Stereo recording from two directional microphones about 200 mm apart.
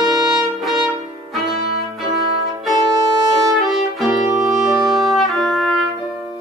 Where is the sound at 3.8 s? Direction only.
Centre (ahead or behind).